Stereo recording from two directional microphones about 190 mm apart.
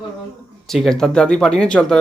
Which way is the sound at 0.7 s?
Centre (ahead or behind).